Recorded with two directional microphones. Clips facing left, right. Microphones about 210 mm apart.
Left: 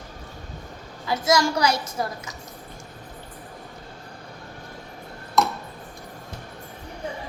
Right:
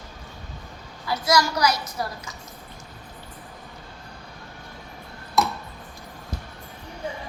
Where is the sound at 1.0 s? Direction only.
25° left (ahead or behind).